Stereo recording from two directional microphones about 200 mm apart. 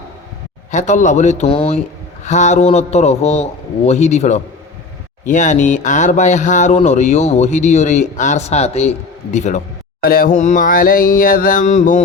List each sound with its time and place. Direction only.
0.7 s a man's voice: 40° left (ahead or behind)
10.0 s mantra: 45° left (ahead or behind)